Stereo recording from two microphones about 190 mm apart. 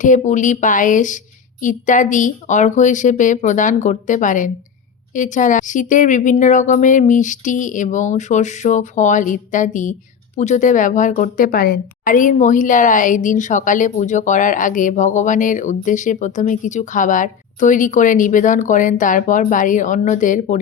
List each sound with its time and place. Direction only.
0.0 s a woman's voice: 40° left (ahead or behind)